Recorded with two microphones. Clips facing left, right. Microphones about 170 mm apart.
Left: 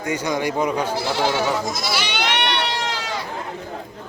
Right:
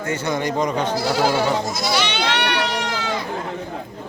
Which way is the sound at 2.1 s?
20° left (ahead or behind).